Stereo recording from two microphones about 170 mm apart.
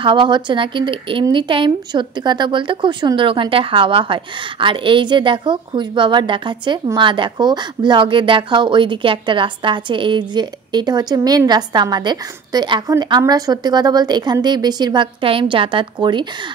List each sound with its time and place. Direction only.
0.0 s speech: 30° right (ahead or behind)